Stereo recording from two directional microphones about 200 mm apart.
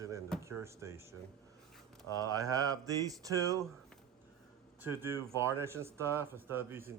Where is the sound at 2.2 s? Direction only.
15° right (ahead or behind).